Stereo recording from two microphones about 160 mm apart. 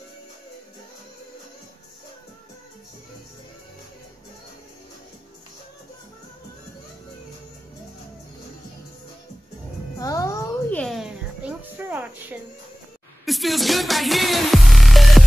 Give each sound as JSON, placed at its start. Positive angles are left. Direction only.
{"t": 9.9, "sound": "music", "side_deg": 20}
{"t": 10.8, "sound": "music", "side_deg": 0}
{"t": 13.2, "sound": "music", "side_deg": 0}